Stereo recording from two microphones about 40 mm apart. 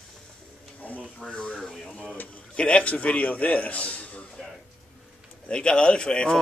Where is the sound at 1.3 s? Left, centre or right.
Left.